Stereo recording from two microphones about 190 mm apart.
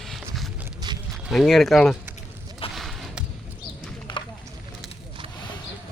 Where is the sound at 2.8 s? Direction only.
Centre (ahead or behind).